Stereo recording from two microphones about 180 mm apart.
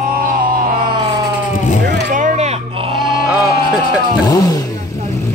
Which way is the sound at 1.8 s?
45° right (ahead or behind).